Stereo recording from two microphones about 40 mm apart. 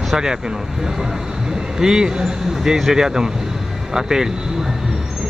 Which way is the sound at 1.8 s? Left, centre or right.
Centre.